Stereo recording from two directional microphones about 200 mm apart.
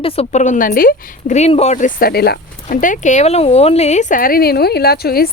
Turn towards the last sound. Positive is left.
turn(degrees=50)  # may be behind; listen again after turning